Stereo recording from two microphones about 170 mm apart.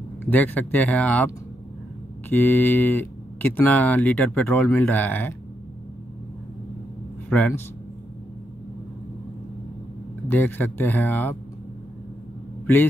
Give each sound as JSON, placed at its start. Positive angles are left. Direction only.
{"t": 0.2, "sound": "speech", "side_deg": 10}
{"t": 7.2, "sound": "speech", "side_deg": 10}
{"t": 10.2, "sound": "speech", "side_deg": 10}